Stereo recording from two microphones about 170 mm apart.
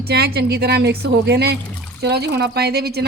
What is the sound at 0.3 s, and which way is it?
Speech, 70° right (ahead or behind).